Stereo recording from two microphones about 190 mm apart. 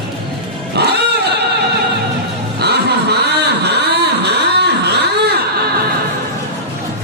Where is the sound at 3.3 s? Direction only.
60° right (ahead or behind).